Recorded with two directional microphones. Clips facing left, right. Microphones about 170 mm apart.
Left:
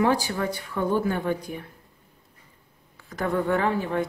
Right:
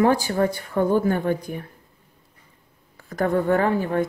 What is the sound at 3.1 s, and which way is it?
Speech, 45° right (ahead or behind).